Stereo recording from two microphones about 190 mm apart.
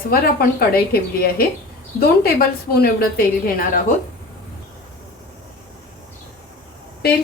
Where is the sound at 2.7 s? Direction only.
50° left (ahead or behind).